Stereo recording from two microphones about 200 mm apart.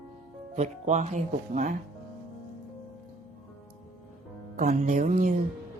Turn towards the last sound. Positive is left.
turn(degrees=-40)  # may be behind; listen again after turning